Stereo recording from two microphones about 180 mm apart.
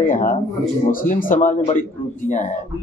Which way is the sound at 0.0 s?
50° left (ahead or behind).